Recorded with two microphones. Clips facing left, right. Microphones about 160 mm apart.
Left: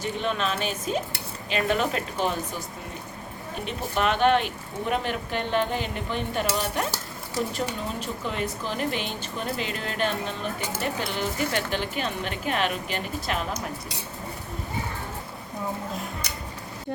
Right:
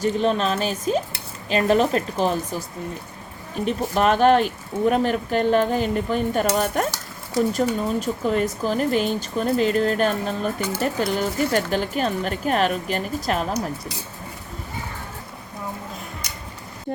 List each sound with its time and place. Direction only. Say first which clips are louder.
0.0 s speech: right 7 dB; 35° right (ahead or behind)
3.9 s speech: right 5 dB; 40° right (ahead or behind)